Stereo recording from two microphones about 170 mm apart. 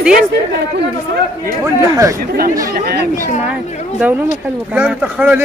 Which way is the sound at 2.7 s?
65° right (ahead or behind).